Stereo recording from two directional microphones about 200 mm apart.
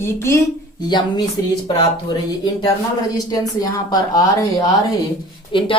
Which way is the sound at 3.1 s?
20° left (ahead or behind).